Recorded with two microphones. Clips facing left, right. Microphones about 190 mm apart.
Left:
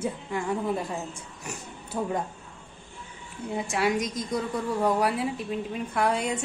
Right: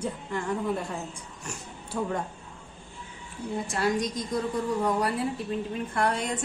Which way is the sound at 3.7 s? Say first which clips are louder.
Left 1 dB; centre (ahead or behind).